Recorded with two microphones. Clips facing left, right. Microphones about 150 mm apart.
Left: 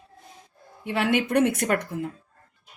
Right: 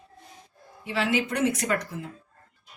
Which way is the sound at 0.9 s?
60° left (ahead or behind).